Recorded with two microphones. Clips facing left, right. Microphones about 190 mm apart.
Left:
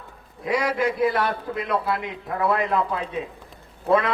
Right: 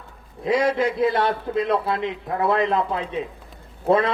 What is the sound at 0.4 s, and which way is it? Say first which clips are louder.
A man's voice: right 3 dB; 25° right (ahead or behind).